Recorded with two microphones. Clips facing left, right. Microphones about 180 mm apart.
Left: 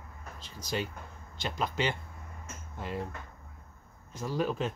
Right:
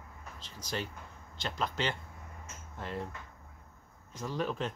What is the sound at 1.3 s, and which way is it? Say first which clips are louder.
Speech: left 2 dB; 10° left (ahead or behind).